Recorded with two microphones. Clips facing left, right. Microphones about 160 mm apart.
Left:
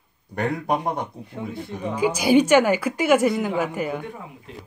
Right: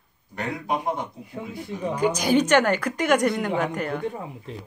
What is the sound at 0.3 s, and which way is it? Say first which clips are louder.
Speech: left 4 dB; 50° left (ahead or behind).